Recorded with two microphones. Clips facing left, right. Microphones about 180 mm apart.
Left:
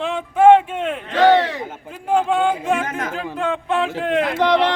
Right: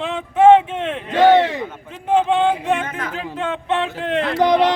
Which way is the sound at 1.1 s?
20° right (ahead or behind).